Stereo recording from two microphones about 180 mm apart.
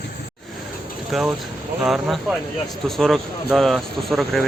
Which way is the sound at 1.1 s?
Centre (ahead or behind).